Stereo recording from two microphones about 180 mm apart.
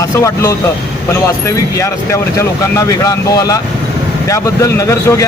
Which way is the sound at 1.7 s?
15° left (ahead or behind).